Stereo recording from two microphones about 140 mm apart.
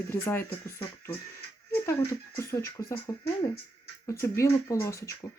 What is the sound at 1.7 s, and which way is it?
Speech, 20° left (ahead or behind).